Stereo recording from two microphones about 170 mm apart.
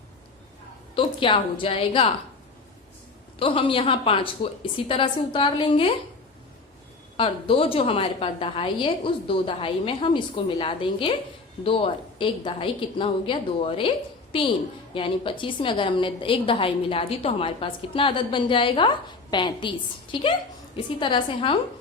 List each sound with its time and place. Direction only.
0.9 s a woman's voice: 30° left (ahead or behind)
3.3 s a woman's voice: 30° left (ahead or behind)
7.2 s a woman's voice: 35° left (ahead or behind)
14.9 s a woman's voice: 30° left (ahead or behind)